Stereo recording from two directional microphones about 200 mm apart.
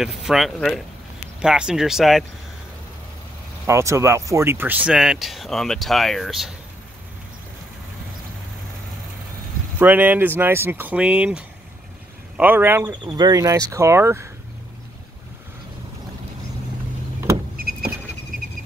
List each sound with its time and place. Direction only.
0.0 s speech: centre (ahead or behind)
3.6 s speech: 15° right (ahead or behind)
9.8 s speech: 10° right (ahead or behind)
13.0 s speech: 20° right (ahead or behind)
17.6 s a sound: 50° right (ahead or behind)